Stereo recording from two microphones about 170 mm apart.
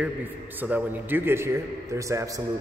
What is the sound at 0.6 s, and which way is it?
A man's voice, 10° right (ahead or behind).